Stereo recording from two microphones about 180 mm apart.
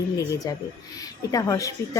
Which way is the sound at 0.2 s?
20° left (ahead or behind).